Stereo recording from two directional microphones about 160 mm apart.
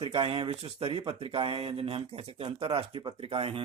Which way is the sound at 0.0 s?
35° right (ahead or behind).